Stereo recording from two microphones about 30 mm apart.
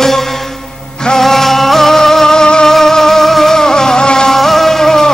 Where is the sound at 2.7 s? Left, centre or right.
Centre.